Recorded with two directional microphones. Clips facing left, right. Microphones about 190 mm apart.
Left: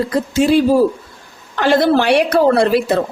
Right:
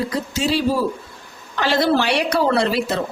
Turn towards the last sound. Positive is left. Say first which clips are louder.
# left 6 dB
turn(degrees=55)  # may be behind; listen again after turning